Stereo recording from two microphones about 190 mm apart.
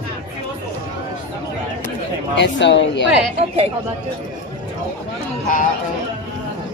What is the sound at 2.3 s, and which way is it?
Speech, 70° left (ahead or behind).